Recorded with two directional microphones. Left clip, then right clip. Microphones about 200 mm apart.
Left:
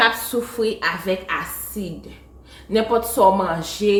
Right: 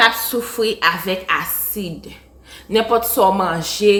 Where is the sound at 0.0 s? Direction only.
20° right (ahead or behind).